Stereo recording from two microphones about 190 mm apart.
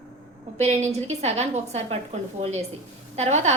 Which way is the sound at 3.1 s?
35° right (ahead or behind).